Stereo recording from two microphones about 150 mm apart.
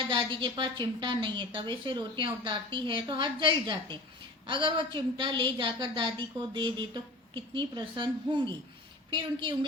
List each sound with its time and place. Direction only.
0.1 s a woman's voice: 35° right (ahead or behind)